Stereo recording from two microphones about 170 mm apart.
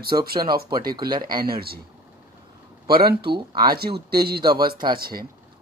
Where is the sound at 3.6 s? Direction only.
65° right (ahead or behind).